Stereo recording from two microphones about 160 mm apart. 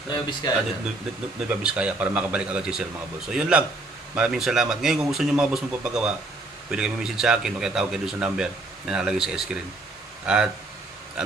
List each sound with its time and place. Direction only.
0.1 s speech: 25° left (ahead or behind)
1.5 s speech: 5° right (ahead or behind)